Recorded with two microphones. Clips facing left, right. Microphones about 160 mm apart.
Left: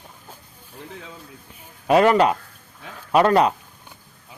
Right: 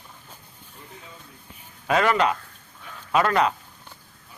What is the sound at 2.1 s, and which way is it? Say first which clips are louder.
Speech: left 5 dB; 35° left (ahead or behind).